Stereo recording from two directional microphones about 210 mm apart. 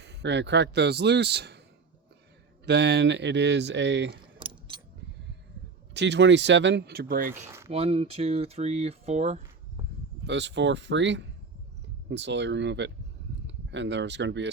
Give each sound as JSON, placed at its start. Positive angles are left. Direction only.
{"t": 0.0, "sound": "speech", "side_deg": -55}
{"t": 2.6, "sound": "speech", "side_deg": -55}
{"t": 4.4, "sound": "gears", "side_deg": -25}
{"t": 5.9, "sound": "speech", "side_deg": -55}
{"t": 7.3, "sound": "speech", "side_deg": -10}
{"t": 7.7, "sound": "speech", "side_deg": -25}
{"t": 10.2, "sound": "speech", "side_deg": -55}